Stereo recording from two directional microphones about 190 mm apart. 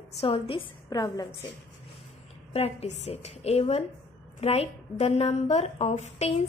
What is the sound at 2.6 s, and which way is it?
A woman's voice, 30° left (ahead or behind).